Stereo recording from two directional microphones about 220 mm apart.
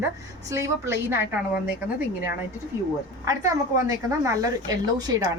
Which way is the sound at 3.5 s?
15° right (ahead or behind).